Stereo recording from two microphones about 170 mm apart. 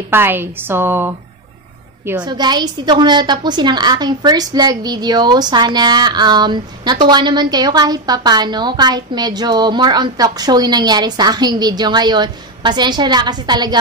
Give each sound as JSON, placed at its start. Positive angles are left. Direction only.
{"t": 0.1, "sound": "a woman's voice", "side_deg": -15}
{"t": 2.2, "sound": "a woman's voice", "side_deg": -25}